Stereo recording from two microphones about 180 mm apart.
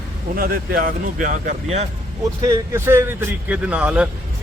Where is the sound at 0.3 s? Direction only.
55° right (ahead or behind).